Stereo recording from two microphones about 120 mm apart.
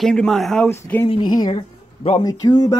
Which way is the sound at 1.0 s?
50° left (ahead or behind).